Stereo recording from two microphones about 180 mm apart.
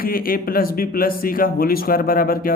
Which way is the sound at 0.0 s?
55° left (ahead or behind).